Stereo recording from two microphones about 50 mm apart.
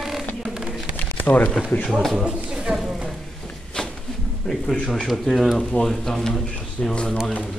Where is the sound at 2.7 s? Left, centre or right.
Centre.